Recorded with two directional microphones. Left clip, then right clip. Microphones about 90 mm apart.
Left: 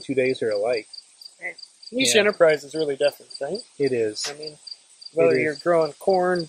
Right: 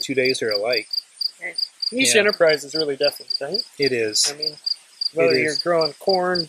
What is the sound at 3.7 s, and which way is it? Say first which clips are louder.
Cricket: right 2 dB; 35° right (ahead or behind).